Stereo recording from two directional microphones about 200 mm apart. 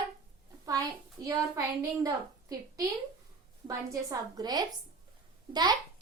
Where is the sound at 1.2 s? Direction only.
15° right (ahead or behind).